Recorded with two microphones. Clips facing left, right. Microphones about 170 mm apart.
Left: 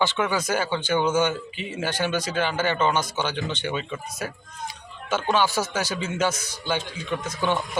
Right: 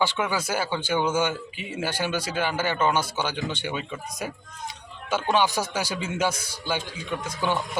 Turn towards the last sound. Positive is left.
turn(degrees=-10)  # may be behind; listen again after turning